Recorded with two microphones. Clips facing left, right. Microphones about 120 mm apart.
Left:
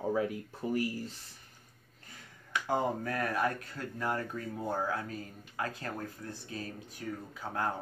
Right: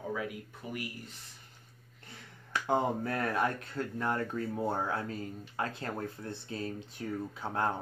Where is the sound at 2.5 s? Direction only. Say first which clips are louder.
Right 1 dB; 25° right (ahead or behind).